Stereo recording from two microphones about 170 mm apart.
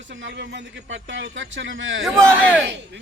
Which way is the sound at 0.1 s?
90° right.